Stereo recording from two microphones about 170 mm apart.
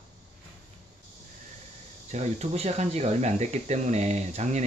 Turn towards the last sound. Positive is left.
turn(degrees=-45)  # may be behind; listen again after turning